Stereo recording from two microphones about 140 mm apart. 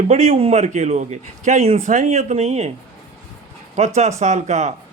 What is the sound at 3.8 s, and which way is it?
Speech, 50° right (ahead or behind).